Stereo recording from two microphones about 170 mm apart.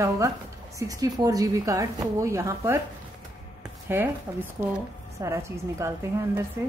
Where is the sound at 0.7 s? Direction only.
20° right (ahead or behind).